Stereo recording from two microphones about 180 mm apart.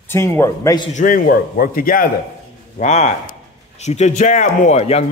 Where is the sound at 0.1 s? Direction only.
15° left (ahead or behind).